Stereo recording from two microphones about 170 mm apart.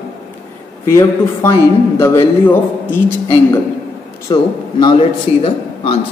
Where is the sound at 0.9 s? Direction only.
15° left (ahead or behind).